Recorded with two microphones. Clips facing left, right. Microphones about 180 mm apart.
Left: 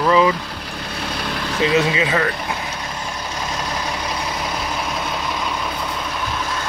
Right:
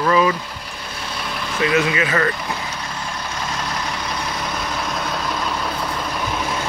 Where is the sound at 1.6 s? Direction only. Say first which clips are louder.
Left 1 dB; 25° left (ahead or behind).